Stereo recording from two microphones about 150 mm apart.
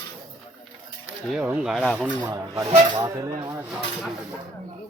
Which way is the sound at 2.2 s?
25° right (ahead or behind).